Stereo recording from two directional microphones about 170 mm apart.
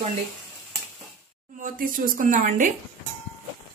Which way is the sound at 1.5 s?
50° right (ahead or behind).